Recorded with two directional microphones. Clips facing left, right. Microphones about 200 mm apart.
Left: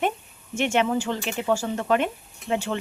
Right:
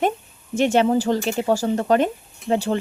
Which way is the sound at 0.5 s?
35° right (ahead or behind).